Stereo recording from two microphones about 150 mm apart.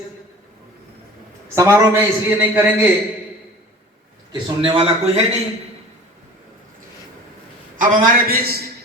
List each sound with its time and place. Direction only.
1.5 s a man's voice: 20° right (ahead or behind)
4.3 s a man's voice: 35° right (ahead or behind)
7.8 s a man's voice: 70° right (ahead or behind)